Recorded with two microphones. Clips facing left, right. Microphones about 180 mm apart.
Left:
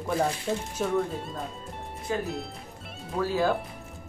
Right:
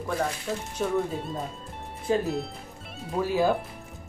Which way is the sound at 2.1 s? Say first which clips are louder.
Right 5 dB; 30° right (ahead or behind).